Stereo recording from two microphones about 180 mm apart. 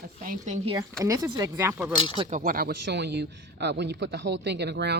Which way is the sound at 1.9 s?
25° left (ahead or behind).